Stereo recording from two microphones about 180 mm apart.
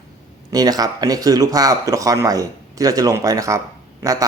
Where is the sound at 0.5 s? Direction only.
20° right (ahead or behind).